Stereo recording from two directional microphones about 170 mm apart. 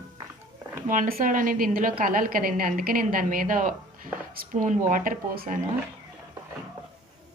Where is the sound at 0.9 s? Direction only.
55° right (ahead or behind).